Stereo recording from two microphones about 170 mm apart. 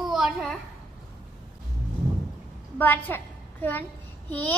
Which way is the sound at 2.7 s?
10° left (ahead or behind).